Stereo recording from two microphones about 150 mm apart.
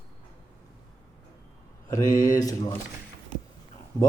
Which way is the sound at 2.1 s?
25° left (ahead or behind).